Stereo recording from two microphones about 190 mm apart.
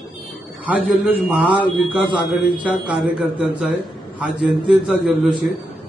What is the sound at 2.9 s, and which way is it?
A man's voice, 5° right (ahead or behind).